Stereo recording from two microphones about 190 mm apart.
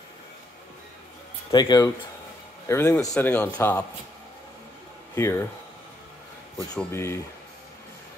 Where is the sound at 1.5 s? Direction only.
20° left (ahead or behind).